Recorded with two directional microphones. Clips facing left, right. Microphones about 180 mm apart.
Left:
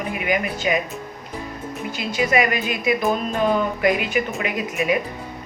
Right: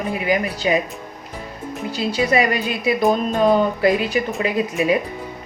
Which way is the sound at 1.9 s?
35° right (ahead or behind).